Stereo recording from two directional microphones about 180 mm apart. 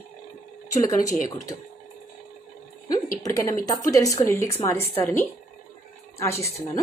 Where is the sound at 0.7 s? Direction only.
20° left (ahead or behind).